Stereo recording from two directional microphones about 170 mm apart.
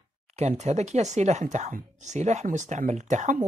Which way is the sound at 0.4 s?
40° right (ahead or behind).